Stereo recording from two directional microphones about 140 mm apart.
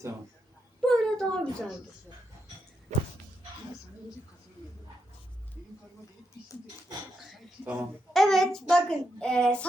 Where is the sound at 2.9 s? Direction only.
55° right (ahead or behind).